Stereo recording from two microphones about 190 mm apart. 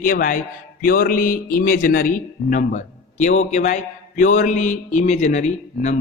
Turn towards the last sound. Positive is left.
turn(degrees=40)  # may be behind; listen again after turning